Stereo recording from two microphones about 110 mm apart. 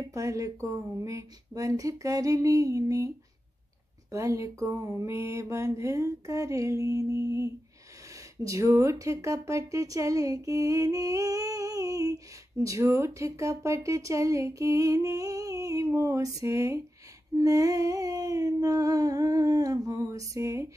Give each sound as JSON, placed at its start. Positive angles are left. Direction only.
{"t": 0.1, "sound": "speech", "side_deg": -30}
{"t": 4.1, "sound": "speech", "side_deg": -30}
{"t": 17.4, "sound": "a sound", "side_deg": -30}